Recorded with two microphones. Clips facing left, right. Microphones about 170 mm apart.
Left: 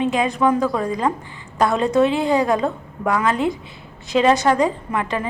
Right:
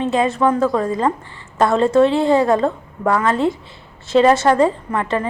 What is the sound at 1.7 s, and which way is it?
Speech, 15° left (ahead or behind).